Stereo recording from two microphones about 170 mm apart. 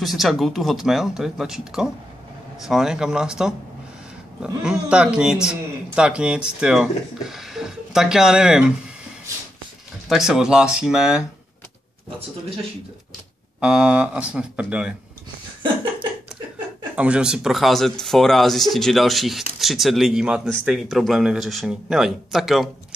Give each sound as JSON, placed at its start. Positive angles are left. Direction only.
{"t": 0.0, "sound": "speech", "side_deg": 0}
{"t": 10.0, "sound": "speech", "side_deg": 0}
{"t": 13.6, "sound": "speech", "side_deg": -5}
{"t": 15.6, "sound": "a sound", "side_deg": -25}
{"t": 16.9, "sound": "speech", "side_deg": -5}